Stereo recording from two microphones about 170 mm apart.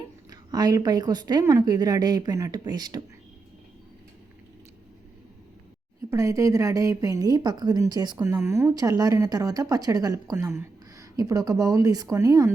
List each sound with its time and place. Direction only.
0.3 s speech: 20° right (ahead or behind)
6.1 s speech: 20° right (ahead or behind)